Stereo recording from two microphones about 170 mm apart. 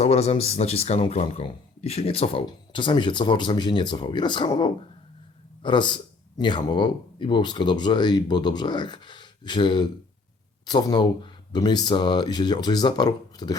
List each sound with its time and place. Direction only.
0.0 s a man's voice: 40° left (ahead or behind)